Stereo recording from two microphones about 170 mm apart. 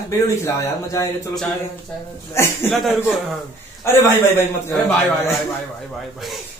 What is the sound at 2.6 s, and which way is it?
Speech, centre (ahead or behind).